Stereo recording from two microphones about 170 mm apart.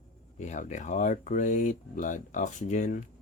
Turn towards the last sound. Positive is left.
turn(degrees=50)  # may be behind; listen again after turning